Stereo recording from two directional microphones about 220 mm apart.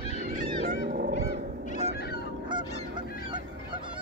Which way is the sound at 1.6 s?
45° left (ahead or behind).